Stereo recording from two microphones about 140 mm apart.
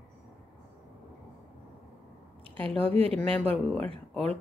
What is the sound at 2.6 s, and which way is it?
Speech, 45° right (ahead or behind).